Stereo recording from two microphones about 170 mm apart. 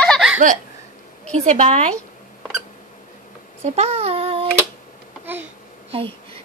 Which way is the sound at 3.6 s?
40° right (ahead or behind).